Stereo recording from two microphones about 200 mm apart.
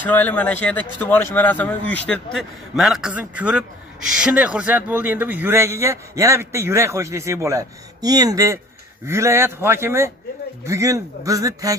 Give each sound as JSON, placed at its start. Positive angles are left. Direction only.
{"t": 0.0, "sound": "a man's voice", "side_deg": 10}